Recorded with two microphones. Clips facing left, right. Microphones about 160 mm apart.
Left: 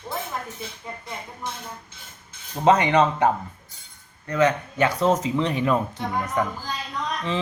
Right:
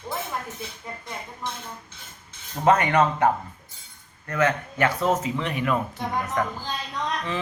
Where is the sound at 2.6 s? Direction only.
20° left (ahead or behind).